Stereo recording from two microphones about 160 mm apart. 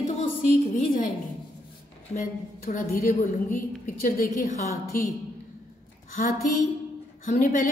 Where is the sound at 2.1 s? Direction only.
60° left (ahead or behind).